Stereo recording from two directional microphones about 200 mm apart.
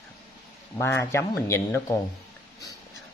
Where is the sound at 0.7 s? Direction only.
15° left (ahead or behind).